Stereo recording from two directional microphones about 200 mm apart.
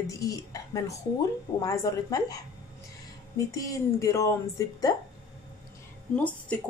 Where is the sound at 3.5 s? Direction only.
15° left (ahead or behind).